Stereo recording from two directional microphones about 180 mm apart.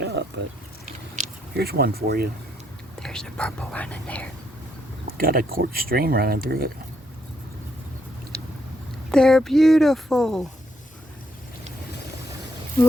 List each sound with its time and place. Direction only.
0.0 s a sound: 75° right (ahead or behind)
1.5 s speech: 60° right (ahead or behind)
3.0 s speech: 5° left (ahead or behind)
5.1 s speech: 55° right (ahead or behind)
9.1 s speech: 5° left (ahead or behind)